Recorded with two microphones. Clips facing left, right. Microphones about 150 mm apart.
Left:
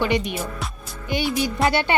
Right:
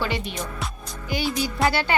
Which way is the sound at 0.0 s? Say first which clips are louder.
Left 5 dB; 20° left (ahead or behind).